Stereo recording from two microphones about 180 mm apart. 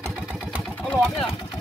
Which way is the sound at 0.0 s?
5° right (ahead or behind).